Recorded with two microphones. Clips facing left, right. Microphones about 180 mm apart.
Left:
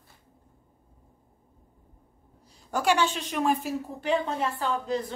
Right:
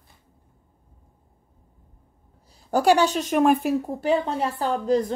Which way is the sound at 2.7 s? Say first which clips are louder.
Right 6 dB; 35° right (ahead or behind).